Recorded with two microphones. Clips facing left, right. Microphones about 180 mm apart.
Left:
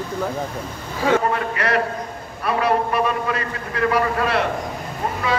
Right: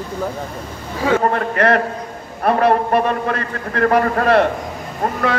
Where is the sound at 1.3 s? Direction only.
50° right (ahead or behind).